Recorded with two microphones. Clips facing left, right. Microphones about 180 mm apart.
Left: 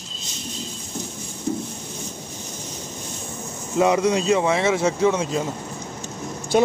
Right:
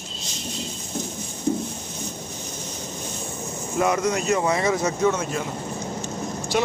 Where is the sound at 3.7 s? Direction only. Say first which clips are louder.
Left 4 dB; 15° left (ahead or behind).